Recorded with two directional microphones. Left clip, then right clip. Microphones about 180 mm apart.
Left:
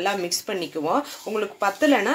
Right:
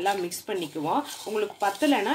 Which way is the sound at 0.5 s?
20° left (ahead or behind).